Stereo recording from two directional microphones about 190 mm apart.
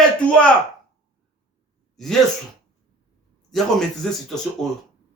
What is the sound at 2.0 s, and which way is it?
Speech, centre (ahead or behind).